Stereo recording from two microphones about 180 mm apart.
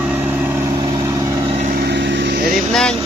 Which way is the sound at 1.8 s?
75° right (ahead or behind).